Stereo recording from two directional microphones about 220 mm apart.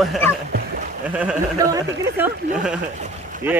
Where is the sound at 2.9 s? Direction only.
35° right (ahead or behind).